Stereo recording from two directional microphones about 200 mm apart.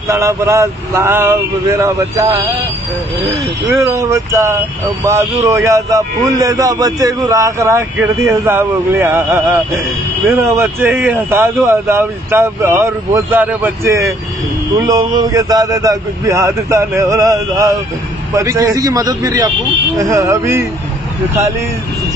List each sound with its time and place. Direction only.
0.1 s a man's voice: 15° right (ahead or behind)
3.7 s a man's voice: 15° right (ahead or behind)